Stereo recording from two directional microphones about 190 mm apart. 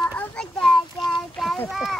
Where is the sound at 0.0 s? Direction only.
10° left (ahead or behind).